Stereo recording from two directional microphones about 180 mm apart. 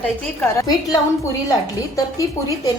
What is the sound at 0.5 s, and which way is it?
A woman's voice, 20° left (ahead or behind).